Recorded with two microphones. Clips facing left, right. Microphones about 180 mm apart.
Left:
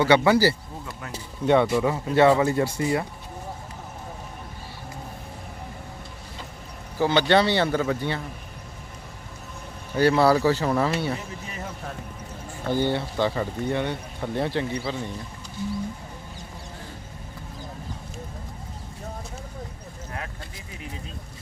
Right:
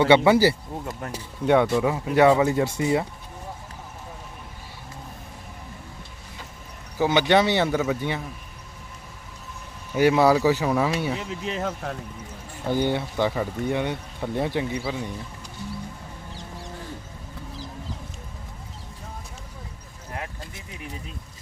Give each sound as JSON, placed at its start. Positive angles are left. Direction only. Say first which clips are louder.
{"t": 0.0, "sound": "speech", "louder": "right 2 dB", "side_deg": -25}
{"t": 1.1, "sound": "speech", "louder": "even", "side_deg": -10}
{"t": 7.0, "sound": "speech", "louder": "even", "side_deg": -15}
{"t": 9.9, "sound": "speech", "louder": "right 1 dB", "side_deg": -15}
{"t": 11.2, "sound": "speech", "louder": "right 7 dB", "side_deg": -90}
{"t": 12.6, "sound": "speech", "louder": "even", "side_deg": -15}